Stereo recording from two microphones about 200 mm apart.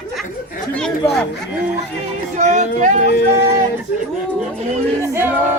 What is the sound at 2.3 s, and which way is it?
Speech, 35° right (ahead or behind).